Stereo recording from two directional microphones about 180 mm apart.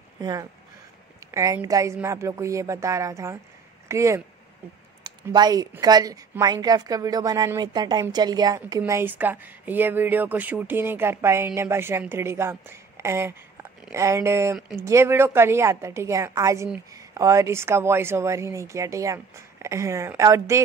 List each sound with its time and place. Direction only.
0.2 s a woman's voice: 20° right (ahead or behind)